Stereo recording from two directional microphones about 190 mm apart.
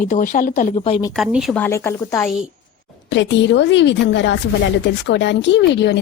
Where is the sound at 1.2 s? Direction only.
Centre (ahead or behind).